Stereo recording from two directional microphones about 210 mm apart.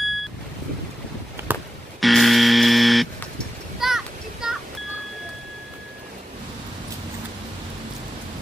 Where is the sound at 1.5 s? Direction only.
Centre (ahead or behind).